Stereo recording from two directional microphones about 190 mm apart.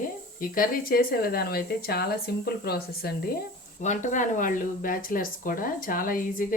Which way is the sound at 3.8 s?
40° left (ahead or behind).